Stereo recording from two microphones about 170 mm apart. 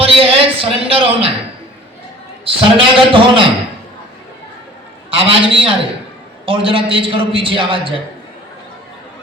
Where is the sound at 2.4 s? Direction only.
30° right (ahead or behind).